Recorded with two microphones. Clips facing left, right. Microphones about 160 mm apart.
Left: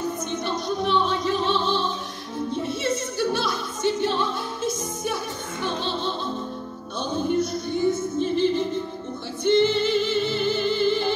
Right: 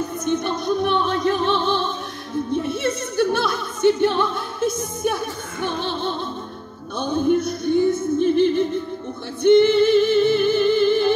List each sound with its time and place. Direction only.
0.2 s music: 55° right (ahead or behind)